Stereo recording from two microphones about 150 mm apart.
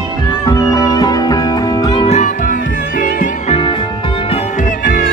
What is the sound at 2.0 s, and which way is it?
Music, 50° left (ahead or behind).